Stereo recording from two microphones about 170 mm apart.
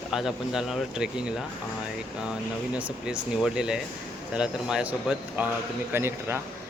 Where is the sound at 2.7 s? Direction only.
5° right (ahead or behind).